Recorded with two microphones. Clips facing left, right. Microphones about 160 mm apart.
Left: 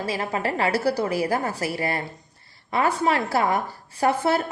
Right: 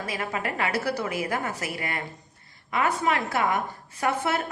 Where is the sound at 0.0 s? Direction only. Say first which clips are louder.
Left 4 dB; 30° left (ahead or behind).